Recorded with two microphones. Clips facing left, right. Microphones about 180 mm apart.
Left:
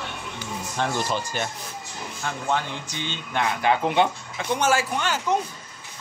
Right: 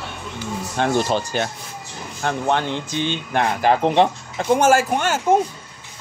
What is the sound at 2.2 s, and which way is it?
Speech, 65° right (ahead or behind).